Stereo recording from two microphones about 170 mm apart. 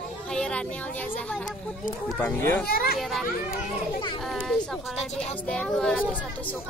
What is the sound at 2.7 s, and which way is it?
Speech, 65° left (ahead or behind).